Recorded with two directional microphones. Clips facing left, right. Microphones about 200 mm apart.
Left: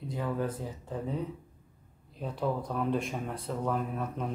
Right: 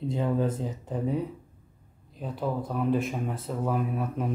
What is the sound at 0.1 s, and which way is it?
Speech, 25° right (ahead or behind).